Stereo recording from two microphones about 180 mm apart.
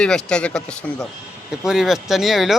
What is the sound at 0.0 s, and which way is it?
Speech, 5° left (ahead or behind).